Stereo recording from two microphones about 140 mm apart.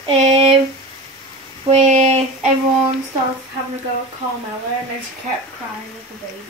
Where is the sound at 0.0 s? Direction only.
45° right (ahead or behind).